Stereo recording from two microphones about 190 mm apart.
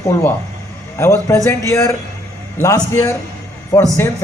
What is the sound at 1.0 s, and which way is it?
A man's voice, 15° left (ahead or behind).